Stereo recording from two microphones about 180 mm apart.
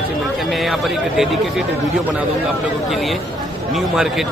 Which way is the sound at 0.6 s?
Centre (ahead or behind).